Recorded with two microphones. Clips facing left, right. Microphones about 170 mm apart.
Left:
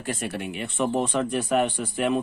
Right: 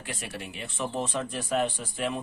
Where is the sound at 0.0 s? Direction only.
45° left (ahead or behind).